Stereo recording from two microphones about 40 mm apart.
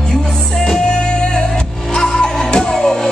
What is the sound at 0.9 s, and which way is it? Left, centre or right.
Music, left.